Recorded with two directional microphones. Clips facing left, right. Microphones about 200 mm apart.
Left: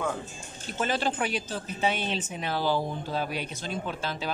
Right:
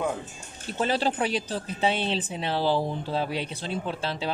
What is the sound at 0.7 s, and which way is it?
A woman's voice, 35° right (ahead or behind).